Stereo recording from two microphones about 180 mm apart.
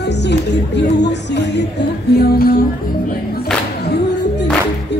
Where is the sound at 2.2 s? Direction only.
55° left (ahead or behind).